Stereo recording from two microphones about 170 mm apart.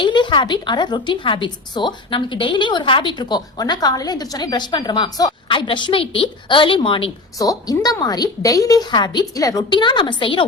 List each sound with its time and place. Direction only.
0.0 s a woman's voice: 30° left (ahead or behind)